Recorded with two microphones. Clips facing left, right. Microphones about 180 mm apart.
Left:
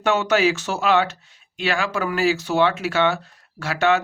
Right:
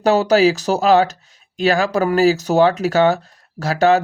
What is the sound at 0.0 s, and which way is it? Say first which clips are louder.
Speech: right 6 dB; 35° right (ahead or behind).